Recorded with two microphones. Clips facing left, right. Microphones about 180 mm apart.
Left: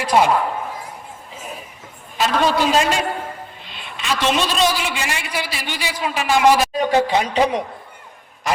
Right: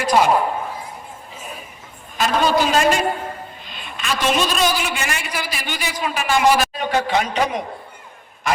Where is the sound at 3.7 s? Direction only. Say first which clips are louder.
Left 1 dB; 25° left (ahead or behind).